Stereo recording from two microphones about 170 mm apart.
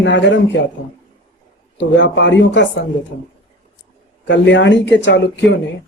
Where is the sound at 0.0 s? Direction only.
90° left.